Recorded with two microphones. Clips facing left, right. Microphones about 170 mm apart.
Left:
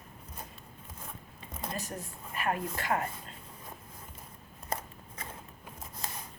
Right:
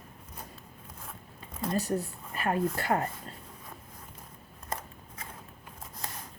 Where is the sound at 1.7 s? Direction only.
35° right (ahead or behind).